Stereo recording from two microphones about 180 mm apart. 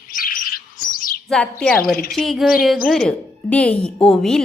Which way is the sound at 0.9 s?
55° left (ahead or behind).